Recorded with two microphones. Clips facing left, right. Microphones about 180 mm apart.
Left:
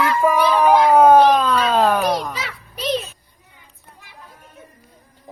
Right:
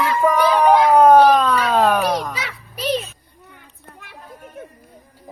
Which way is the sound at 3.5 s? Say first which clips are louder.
Right 4 dB; 60° right (ahead or behind).